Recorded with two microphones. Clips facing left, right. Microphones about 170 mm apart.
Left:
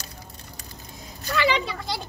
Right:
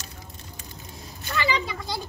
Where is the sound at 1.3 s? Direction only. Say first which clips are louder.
Left 3 dB; 70° left (ahead or behind).